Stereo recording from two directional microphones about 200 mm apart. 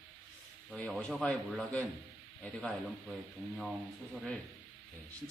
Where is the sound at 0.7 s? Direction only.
Centre (ahead or behind).